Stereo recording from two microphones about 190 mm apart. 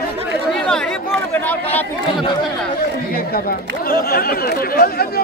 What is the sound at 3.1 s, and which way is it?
Speech, 50° left (ahead or behind).